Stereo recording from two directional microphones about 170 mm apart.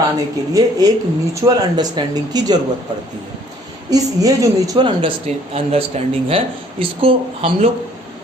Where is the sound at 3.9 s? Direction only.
20° right (ahead or behind).